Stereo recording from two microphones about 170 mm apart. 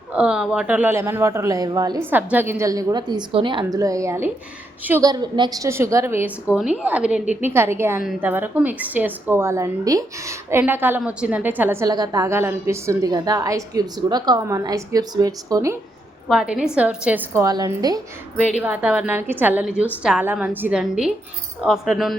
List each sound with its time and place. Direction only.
0.1 s a woman's voice: 5° right (ahead or behind); by 2.0 s 20° right (ahead or behind)
2.0 s a woman's voice: 10° right (ahead or behind)
16.3 s a woman's voice: 5° right (ahead or behind); by 18.0 s 20° right (ahead or behind)
18.6 s a woman's voice: 10° right (ahead or behind)